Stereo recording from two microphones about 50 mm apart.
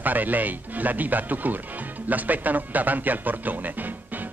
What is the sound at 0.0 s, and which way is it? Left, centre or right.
Speech, right.